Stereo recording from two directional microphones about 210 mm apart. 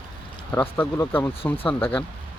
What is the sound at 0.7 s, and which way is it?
Speech, 10° left (ahead or behind).